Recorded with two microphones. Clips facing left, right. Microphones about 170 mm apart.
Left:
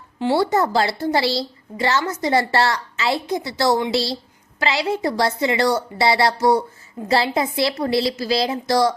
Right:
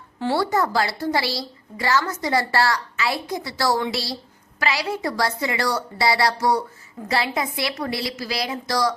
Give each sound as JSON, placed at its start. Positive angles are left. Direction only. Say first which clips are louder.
{"t": 0.2, "sound": "a woman's voice", "louder": "left 3 dB", "side_deg": 20}